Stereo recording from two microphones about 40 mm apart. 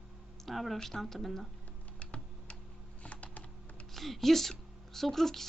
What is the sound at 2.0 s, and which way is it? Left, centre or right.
Computer keyboard, left.